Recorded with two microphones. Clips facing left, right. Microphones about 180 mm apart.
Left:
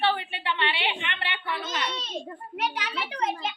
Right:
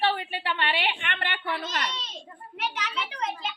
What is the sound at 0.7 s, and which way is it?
Speech, 55° right (ahead or behind).